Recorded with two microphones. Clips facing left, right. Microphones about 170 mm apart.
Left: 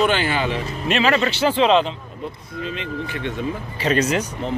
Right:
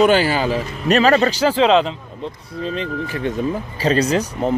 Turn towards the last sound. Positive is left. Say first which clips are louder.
# right 4 dB
turn(degrees=-35)  # may be behind; listen again after turning